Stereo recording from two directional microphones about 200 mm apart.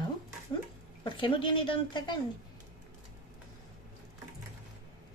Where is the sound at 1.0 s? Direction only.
25° left (ahead or behind).